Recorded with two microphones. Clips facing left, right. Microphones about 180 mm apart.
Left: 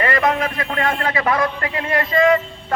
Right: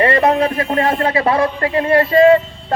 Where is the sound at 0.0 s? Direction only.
30° right (ahead or behind).